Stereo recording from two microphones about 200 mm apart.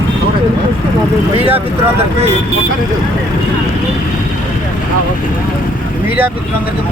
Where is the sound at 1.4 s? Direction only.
30° right (ahead or behind).